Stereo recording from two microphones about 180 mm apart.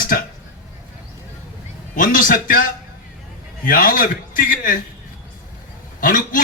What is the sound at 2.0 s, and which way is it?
Speech, 50° left (ahead or behind).